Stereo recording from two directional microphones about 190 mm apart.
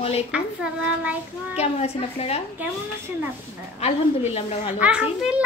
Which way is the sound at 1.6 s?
35° left (ahead or behind).